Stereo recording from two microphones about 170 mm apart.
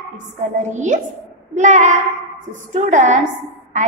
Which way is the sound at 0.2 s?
45° right (ahead or behind).